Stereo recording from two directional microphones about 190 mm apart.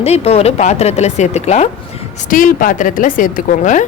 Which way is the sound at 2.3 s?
45° left (ahead or behind).